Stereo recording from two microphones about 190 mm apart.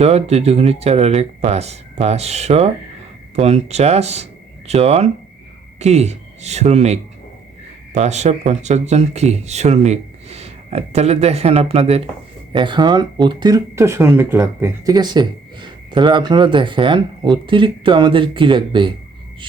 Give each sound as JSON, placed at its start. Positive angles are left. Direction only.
{"t": 0.0, "sound": "speech", "side_deg": -35}